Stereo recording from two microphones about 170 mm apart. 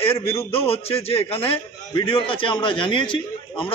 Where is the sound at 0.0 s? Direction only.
35° left (ahead or behind).